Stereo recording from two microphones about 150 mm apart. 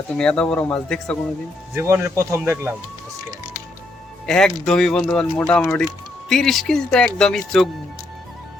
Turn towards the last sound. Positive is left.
turn(degrees=5)  # may be behind; listen again after turning